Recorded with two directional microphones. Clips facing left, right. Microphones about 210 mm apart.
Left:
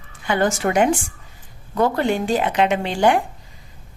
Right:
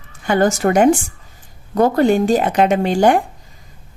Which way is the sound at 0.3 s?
45° right (ahead or behind).